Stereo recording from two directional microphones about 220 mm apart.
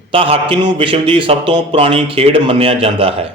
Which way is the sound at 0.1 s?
25° right (ahead or behind).